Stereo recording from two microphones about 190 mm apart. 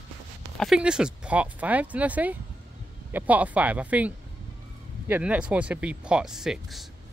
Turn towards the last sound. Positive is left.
turn(degrees=0)  # may be behind; listen again after turning